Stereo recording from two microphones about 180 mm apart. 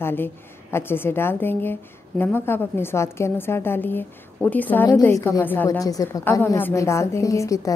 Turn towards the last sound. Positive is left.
turn(degrees=15)  # may be behind; listen again after turning